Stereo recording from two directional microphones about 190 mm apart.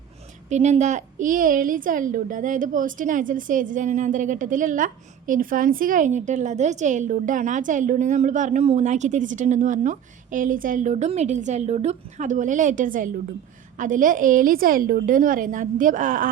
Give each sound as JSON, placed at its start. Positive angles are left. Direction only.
{"t": 0.5, "sound": "a woman's voice", "side_deg": -35}